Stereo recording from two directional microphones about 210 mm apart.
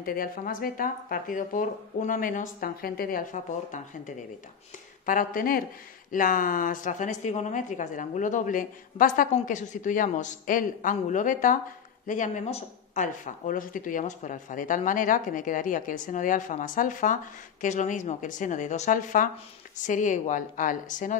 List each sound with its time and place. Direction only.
0.0 s speech: 40° left (ahead or behind)